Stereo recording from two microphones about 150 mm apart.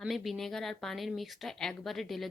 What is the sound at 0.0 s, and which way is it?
A woman's voice, centre (ahead or behind).